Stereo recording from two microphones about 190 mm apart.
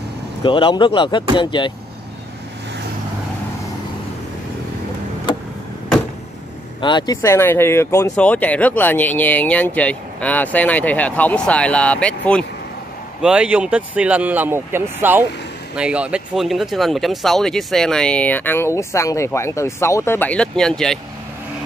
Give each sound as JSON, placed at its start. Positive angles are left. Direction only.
{"t": 0.4, "sound": "speech", "side_deg": 25}
{"t": 6.8, "sound": "speech", "side_deg": 25}
{"t": 13.2, "sound": "speech", "side_deg": -5}